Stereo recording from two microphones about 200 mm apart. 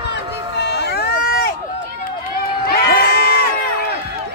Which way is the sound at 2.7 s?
50° left (ahead or behind).